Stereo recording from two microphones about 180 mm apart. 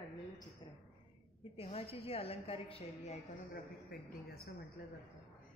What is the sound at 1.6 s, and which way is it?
A woman's voice, 35° left (ahead or behind).